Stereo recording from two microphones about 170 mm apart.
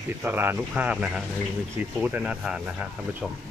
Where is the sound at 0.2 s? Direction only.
15° right (ahead or behind).